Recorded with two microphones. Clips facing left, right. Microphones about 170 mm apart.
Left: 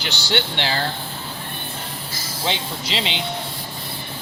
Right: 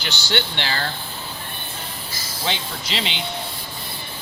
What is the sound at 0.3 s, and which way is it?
Speech, 20° left (ahead or behind).